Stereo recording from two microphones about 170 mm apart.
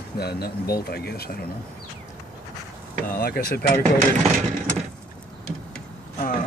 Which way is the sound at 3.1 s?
60° left (ahead or behind).